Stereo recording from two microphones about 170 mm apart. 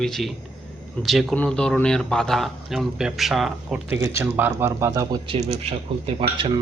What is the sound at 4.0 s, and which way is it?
Speech, 15° right (ahead or behind).